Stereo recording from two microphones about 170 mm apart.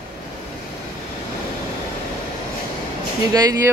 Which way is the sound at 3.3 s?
20° right (ahead or behind).